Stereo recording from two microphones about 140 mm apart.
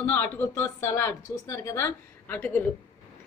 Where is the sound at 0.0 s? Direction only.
15° left (ahead or behind).